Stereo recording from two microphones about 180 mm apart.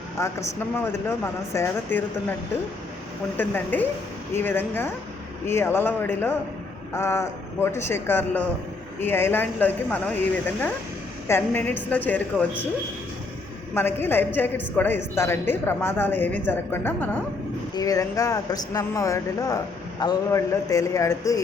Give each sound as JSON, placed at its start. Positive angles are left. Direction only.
{"t": 0.2, "sound": "a woman's voice", "side_deg": 15}
{"t": 3.3, "sound": "a woman's voice", "side_deg": 10}
{"t": 11.3, "sound": "a woman's voice", "side_deg": 10}
{"t": 13.7, "sound": "a woman's voice", "side_deg": 10}